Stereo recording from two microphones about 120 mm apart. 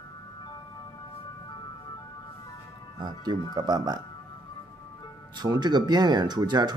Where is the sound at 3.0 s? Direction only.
40° right (ahead or behind).